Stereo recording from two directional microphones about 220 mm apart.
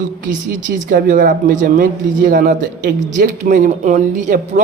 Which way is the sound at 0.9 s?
40° right (ahead or behind).